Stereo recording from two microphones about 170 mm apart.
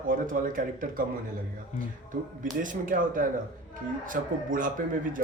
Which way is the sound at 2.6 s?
50° right (ahead or behind).